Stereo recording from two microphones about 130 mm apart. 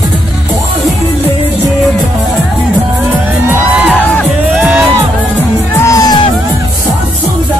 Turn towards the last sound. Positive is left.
turn(degrees=25)  # may be behind; listen again after turning